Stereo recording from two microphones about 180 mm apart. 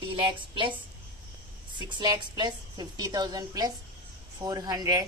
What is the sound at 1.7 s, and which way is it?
A woman's voice, 25° right (ahead or behind).